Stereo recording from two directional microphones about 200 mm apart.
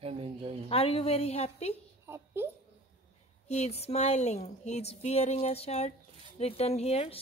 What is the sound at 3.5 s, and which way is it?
Speech, 30° left (ahead or behind).